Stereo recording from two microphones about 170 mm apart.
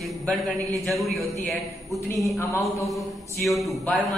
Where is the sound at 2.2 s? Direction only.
15° left (ahead or behind).